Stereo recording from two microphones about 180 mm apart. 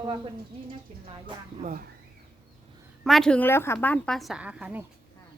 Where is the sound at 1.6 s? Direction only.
50° right (ahead or behind).